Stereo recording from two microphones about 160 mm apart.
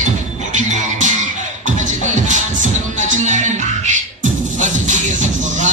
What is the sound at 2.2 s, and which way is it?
Music, 50° right (ahead or behind).